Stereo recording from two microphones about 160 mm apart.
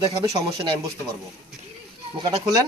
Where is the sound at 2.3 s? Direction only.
25° right (ahead or behind).